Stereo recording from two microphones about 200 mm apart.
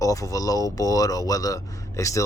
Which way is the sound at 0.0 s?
15° left (ahead or behind).